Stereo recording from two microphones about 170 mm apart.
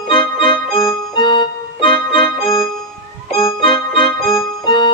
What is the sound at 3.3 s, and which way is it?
Keyboard, 30° left (ahead or behind).